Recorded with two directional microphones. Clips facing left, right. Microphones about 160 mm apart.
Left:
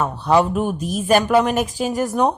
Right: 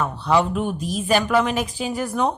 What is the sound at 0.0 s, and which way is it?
A man's voice, 45° left (ahead or behind).